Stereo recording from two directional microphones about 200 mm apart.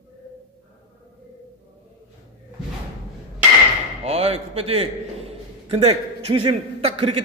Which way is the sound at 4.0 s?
30° right (ahead or behind).